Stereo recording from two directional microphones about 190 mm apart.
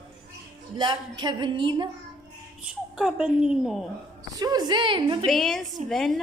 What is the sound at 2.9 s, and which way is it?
Speech, 5° right (ahead or behind).